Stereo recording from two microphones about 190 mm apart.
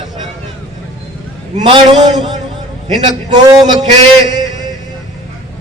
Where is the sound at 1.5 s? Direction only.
30° right (ahead or behind).